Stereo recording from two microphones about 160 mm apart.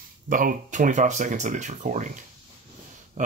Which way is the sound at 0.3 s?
60° right (ahead or behind).